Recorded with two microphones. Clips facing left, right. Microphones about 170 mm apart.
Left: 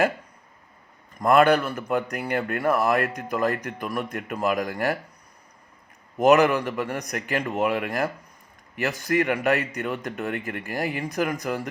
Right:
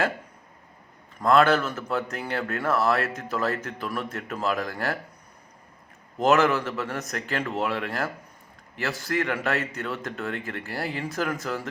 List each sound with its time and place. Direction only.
1.2 s speech: 15° left (ahead or behind)
6.1 s speech: 15° left (ahead or behind)